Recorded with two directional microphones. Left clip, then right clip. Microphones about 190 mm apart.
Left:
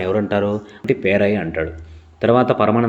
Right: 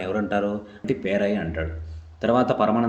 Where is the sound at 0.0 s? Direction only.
20° left (ahead or behind).